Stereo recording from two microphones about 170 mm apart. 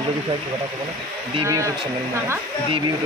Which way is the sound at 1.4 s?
15° right (ahead or behind).